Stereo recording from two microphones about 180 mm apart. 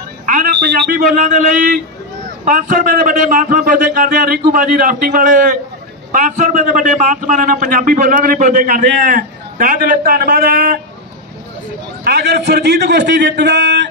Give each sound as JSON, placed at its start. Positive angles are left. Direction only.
{"t": 0.9, "sound": "a man's voice", "side_deg": -45}
{"t": 12.0, "sound": "a man's voice", "side_deg": -65}